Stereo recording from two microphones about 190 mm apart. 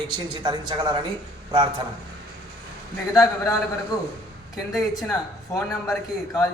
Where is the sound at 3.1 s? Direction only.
20° left (ahead or behind).